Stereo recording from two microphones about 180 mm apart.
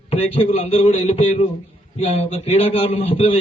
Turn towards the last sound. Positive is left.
turn(degrees=35)  # may be behind; listen again after turning